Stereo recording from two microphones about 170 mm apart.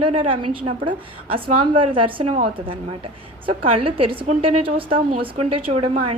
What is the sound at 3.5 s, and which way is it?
Speech, 30° right (ahead or behind).